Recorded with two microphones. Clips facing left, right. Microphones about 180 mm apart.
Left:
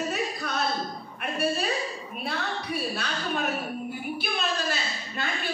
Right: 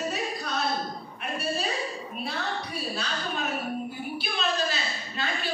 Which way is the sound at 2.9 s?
55° left (ahead or behind).